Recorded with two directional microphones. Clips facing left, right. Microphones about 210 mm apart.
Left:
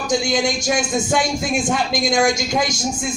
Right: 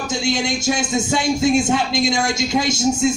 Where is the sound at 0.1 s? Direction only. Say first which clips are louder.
Left 3 dB; 25° right (ahead or behind).